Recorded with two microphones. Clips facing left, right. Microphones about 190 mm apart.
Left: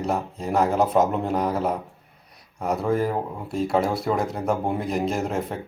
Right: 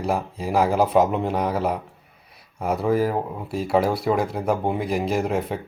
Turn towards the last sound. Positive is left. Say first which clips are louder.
# right 2 dB
turn(degrees=-5)  # may be behind; listen again after turning